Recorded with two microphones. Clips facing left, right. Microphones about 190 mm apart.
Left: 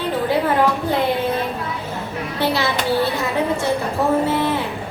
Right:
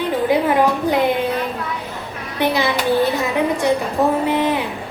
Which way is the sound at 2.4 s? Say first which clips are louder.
Right 2 dB; 15° right (ahead or behind).